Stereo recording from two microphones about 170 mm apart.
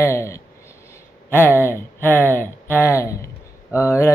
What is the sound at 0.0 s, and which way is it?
Mantra, 15° left (ahead or behind).